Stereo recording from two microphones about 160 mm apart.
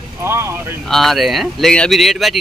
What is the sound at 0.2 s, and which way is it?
Speech, 15° right (ahead or behind).